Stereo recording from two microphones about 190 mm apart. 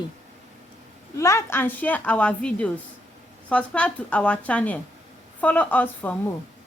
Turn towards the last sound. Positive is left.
turn(degrees=10)  # may be behind; listen again after turning